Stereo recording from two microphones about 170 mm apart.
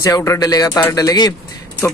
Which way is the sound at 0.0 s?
15° left (ahead or behind).